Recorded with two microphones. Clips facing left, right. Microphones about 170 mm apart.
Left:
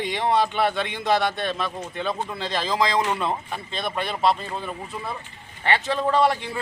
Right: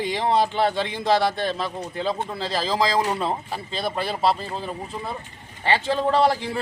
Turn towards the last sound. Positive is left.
turn(degrees=-30)  # may be behind; listen again after turning